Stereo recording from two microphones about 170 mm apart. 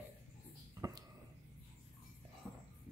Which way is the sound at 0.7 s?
20° right (ahead or behind).